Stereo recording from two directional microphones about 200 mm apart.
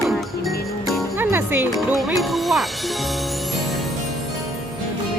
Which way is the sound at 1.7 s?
Centre (ahead or behind).